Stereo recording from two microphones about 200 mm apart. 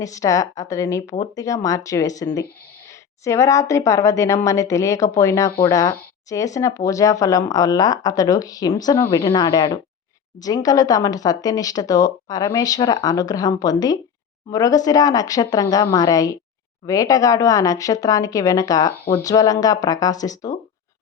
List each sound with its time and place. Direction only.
0.0 s speech: 15° left (ahead or behind)